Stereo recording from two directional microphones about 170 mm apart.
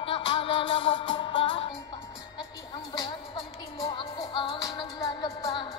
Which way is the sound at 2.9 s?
30° left (ahead or behind).